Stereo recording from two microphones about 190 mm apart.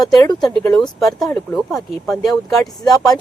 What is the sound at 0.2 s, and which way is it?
Speech, 20° left (ahead or behind).